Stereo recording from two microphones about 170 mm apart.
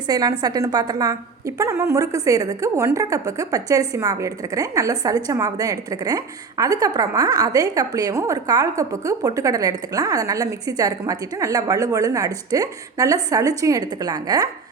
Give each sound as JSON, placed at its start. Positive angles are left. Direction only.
{"t": 0.1, "sound": "a woman's voice", "side_deg": -20}